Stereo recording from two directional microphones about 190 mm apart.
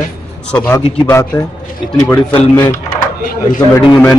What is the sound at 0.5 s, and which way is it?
Speech, 5° left (ahead or behind).